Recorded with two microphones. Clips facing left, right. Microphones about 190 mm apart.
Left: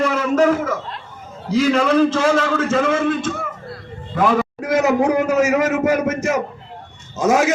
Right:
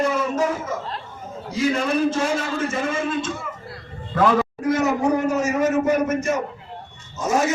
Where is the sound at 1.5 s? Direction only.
90° left; by 3.4 s 70° left (ahead or behind).